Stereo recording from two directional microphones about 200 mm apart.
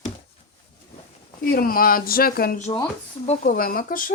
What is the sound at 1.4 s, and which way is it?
Speech, 45° left (ahead or behind).